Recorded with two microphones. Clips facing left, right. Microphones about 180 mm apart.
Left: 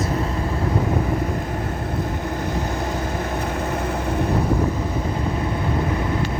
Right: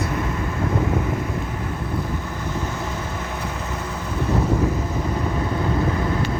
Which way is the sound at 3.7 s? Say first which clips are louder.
Left 5 dB; 55° left (ahead or behind).